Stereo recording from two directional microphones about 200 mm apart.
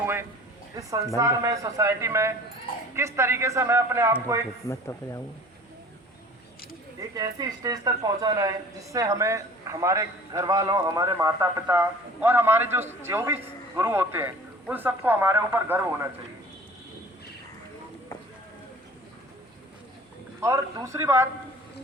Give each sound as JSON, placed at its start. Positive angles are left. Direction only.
{"t": 0.8, "sound": "speech", "side_deg": -15}
{"t": 4.7, "sound": "speech", "side_deg": 15}
{"t": 7.0, "sound": "speech", "side_deg": -20}
{"t": 20.4, "sound": "speech", "side_deg": -15}